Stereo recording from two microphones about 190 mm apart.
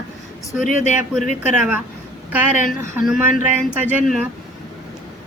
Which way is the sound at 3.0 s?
5° right (ahead or behind).